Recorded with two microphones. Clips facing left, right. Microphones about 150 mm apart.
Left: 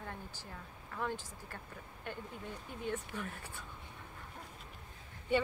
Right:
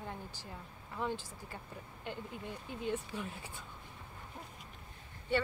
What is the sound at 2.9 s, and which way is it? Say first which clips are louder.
Speech: right 1 dB; 15° right (ahead or behind).